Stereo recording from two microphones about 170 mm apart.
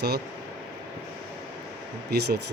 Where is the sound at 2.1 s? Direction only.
75° right (ahead or behind).